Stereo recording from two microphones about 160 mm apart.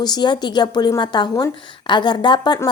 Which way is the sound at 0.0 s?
25° left (ahead or behind).